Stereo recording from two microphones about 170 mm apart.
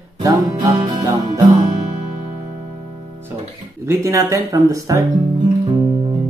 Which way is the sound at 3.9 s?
15° right (ahead or behind).